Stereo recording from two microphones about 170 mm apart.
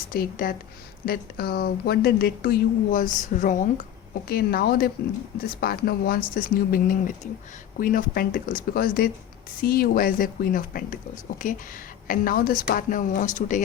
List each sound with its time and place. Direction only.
0.1 s speech: 55° left (ahead or behind)
4.1 s speech: 65° left (ahead or behind); by 13.7 s 45° left (ahead or behind)